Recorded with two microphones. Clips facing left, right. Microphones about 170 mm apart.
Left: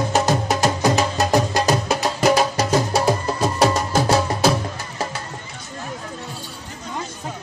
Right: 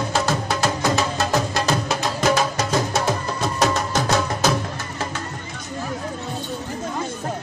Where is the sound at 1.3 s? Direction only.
40° left (ahead or behind).